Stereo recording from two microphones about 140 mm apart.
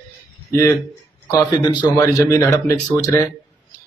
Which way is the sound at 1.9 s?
20° left (ahead or behind).